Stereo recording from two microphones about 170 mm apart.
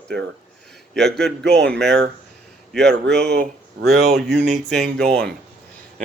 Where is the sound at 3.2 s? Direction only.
75° right (ahead or behind).